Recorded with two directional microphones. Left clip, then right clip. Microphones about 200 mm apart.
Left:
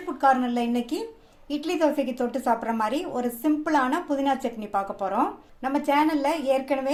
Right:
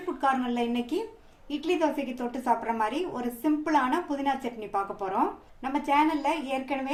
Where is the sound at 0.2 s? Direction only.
25° left (ahead or behind).